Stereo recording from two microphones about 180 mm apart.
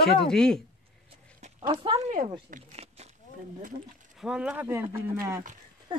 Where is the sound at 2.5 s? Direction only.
35° right (ahead or behind).